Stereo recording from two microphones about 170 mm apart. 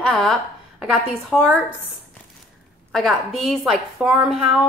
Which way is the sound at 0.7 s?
5° right (ahead or behind).